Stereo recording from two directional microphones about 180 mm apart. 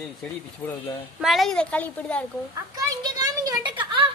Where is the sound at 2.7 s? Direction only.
20° right (ahead or behind).